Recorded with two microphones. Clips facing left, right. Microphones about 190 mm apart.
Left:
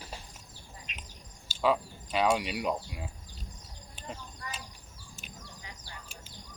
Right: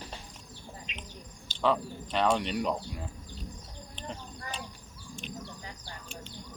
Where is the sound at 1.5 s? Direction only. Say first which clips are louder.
Even; 5° left (ahead or behind).